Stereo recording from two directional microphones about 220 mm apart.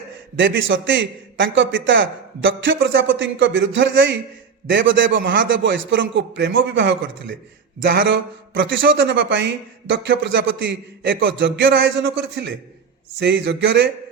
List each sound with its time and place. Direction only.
0.3 s a man's voice: 60° right (ahead or behind)